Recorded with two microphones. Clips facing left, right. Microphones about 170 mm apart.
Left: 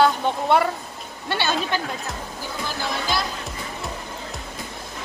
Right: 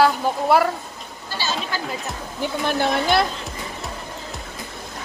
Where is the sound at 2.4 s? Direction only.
65° right (ahead or behind).